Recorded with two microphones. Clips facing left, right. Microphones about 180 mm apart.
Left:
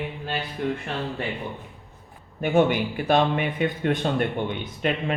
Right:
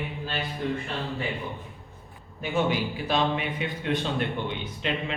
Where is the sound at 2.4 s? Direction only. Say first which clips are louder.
Left 6 dB; 55° left (ahead or behind).